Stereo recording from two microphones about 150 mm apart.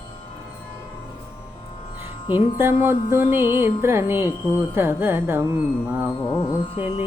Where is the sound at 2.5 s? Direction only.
15° right (ahead or behind).